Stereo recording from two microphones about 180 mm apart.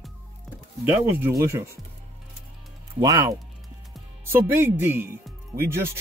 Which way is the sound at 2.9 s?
20° right (ahead or behind).